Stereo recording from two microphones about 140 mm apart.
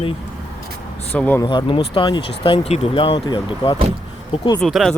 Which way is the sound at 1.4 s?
35° left (ahead or behind).